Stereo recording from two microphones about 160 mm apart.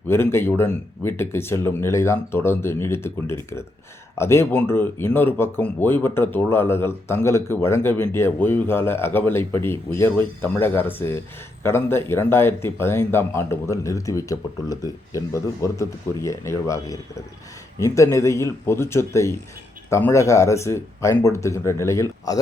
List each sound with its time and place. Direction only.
0.1 s speech: 15° left (ahead or behind)